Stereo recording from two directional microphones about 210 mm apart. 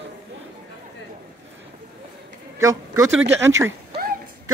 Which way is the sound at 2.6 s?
15° right (ahead or behind).